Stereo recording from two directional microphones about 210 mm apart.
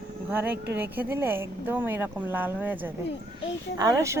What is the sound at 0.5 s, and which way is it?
Speech, 50° right (ahead or behind).